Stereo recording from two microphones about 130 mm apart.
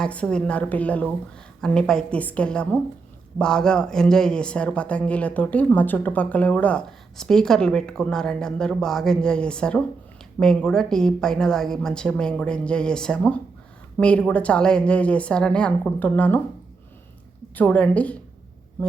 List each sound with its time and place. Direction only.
0.0 s a woman's voice: 10° left (ahead or behind)
17.5 s speech: 10° left (ahead or behind)